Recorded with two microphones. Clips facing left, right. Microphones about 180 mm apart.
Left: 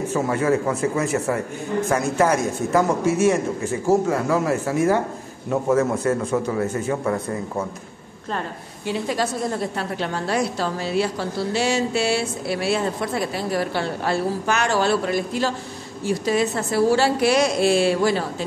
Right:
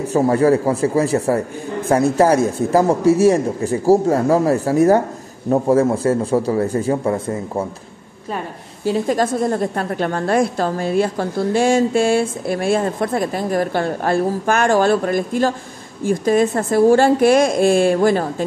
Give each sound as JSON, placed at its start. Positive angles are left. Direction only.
{"t": 0.1, "sound": "speech", "side_deg": -35}
{"t": 8.8, "sound": "a woman's voice", "side_deg": -45}